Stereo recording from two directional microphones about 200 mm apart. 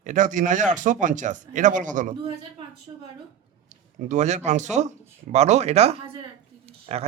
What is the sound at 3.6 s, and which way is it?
Speech, 35° right (ahead or behind).